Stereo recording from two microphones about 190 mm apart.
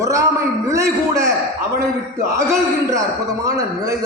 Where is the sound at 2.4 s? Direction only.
15° right (ahead or behind).